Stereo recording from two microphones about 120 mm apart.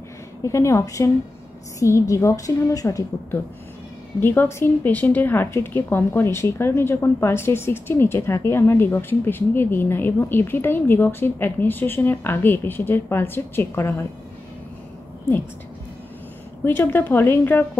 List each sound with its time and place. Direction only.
0.4 s a woman's voice: 25° left (ahead or behind)
4.2 s a woman's voice: 20° left (ahead or behind)
16.6 s a woman's voice: 20° left (ahead or behind)